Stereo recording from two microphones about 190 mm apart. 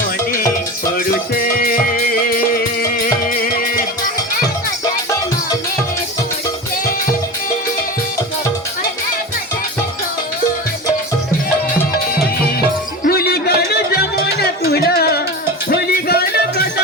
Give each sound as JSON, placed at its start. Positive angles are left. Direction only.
{"t": 0.9, "sound": "music", "side_deg": 50}
{"t": 3.4, "sound": "music", "side_deg": 45}
{"t": 13.1, "sound": "music", "side_deg": 55}